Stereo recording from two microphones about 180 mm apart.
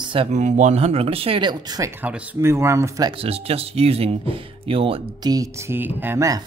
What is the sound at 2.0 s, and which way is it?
Speech, 10° right (ahead or behind).